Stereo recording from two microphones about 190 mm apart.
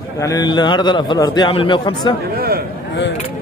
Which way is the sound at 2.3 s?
50° right (ahead or behind).